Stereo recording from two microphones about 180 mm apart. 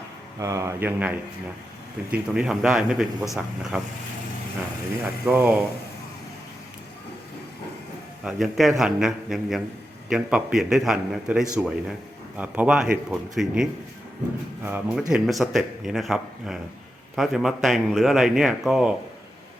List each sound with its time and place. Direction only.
0.3 s speech: 20° right (ahead or behind)
5.0 s speech: 10° right (ahead or behind)
8.2 s speech: centre (ahead or behind)